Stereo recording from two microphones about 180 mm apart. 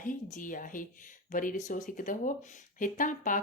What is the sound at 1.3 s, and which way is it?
Speech, 45° left (ahead or behind).